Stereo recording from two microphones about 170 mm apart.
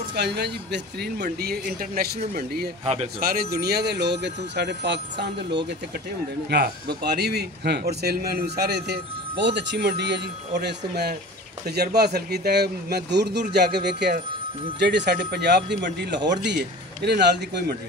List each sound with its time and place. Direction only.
0.1 s speech: 80° right
2.8 s a man's voice: 35° right (ahead or behind)
3.2 s speech: 65° right (ahead or behind); by 5.6 s 90° right
6.5 s speech: 70° right (ahead or behind)
9.4 s speech: 90° right
17.0 s speech: 80° right